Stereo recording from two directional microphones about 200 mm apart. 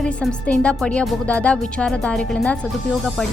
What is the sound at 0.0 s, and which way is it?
Speech, 5° left (ahead or behind).